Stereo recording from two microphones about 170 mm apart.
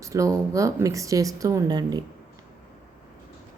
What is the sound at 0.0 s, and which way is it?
Speech, 20° right (ahead or behind).